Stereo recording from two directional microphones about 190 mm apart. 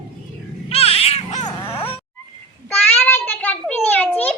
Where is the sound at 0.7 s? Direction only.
30° left (ahead or behind).